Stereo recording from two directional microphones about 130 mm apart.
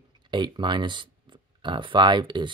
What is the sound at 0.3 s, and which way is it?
Speech, 35° right (ahead or behind).